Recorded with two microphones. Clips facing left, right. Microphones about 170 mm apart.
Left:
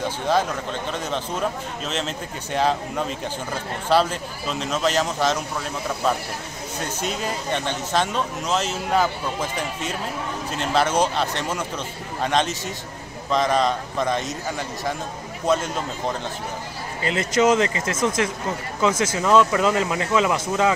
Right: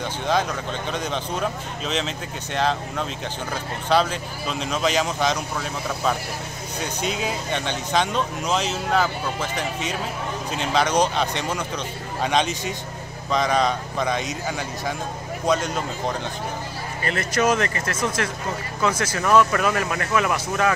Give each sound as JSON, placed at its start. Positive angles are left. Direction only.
{"t": 0.9, "sound": "speech", "side_deg": 5}
{"t": 3.9, "sound": "speech", "side_deg": 5}
{"t": 15.4, "sound": "speech", "side_deg": 5}
{"t": 17.0, "sound": "speech", "side_deg": 20}